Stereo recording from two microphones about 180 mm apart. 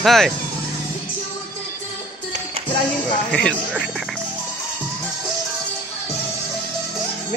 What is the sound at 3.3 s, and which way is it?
Speech, 5° left (ahead or behind).